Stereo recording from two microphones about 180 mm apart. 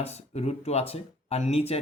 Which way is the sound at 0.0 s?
35° left (ahead or behind).